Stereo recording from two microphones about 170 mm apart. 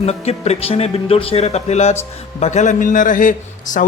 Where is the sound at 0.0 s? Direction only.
40° left (ahead or behind).